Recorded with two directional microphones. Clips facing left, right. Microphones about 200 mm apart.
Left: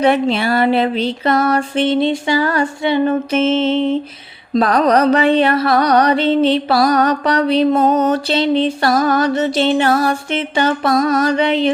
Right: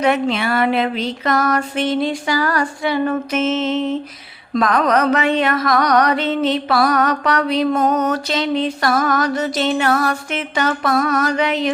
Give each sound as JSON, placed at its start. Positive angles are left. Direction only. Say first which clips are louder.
{"t": 0.0, "sound": "music", "louder": "left 3 dB", "side_deg": 30}